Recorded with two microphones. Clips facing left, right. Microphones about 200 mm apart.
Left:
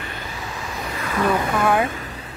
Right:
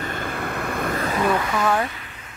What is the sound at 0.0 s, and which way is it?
Vehicle, 50° right (ahead or behind).